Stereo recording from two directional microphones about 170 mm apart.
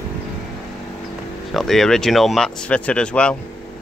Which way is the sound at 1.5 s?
Centre (ahead or behind).